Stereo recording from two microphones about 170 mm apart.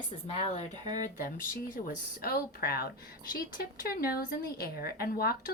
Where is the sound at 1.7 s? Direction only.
60° left (ahead or behind).